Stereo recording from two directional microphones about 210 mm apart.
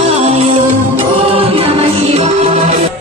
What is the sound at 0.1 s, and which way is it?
Music, 30° right (ahead or behind).